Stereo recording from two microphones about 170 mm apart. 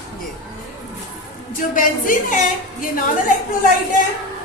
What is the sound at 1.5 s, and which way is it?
Music, 50° left (ahead or behind).